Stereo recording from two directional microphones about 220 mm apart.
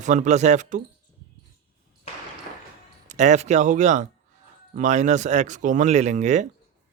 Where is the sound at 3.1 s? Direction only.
30° right (ahead or behind).